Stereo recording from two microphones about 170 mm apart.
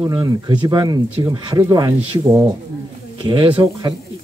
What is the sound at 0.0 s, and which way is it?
Speech, 25° right (ahead or behind).